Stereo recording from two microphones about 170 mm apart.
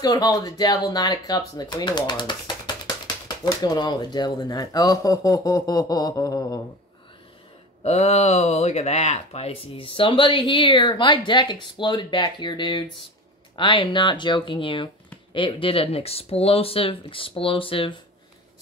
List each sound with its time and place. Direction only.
0.0 s speech: 20° left (ahead or behind)
7.8 s speech: 40° left (ahead or behind)